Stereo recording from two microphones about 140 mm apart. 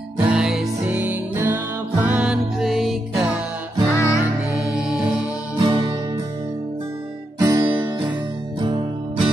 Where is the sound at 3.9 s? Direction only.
20° left (ahead or behind).